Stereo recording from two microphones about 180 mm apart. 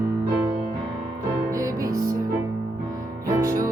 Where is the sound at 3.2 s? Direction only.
15° right (ahead or behind).